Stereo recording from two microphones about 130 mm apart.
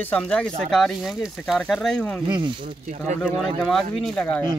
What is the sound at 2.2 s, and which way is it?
Speech, 35° right (ahead or behind).